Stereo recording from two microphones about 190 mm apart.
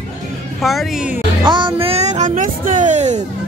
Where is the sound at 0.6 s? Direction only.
Centre (ahead or behind).